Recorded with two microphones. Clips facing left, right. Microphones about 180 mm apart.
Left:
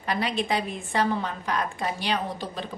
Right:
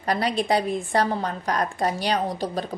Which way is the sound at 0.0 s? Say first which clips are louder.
Right 3 dB; 40° right (ahead or behind).